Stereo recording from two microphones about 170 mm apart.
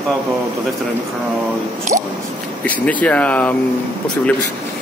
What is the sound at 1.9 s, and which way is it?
Squish, 50° right (ahead or behind).